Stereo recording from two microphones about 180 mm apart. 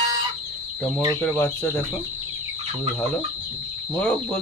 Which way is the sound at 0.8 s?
5° left (ahead or behind).